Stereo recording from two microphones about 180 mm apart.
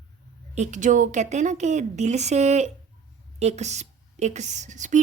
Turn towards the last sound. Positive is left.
turn(degrees=-45)  # may be behind; listen again after turning